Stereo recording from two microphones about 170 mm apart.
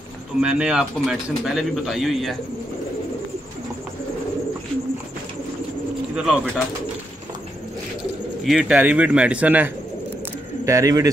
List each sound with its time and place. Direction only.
0.4 s speech: 5° right (ahead or behind)
6.1 s speech: 5° right (ahead or behind)
8.5 s speech: 5° right (ahead or behind); by 11.1 s 20° right (ahead or behind)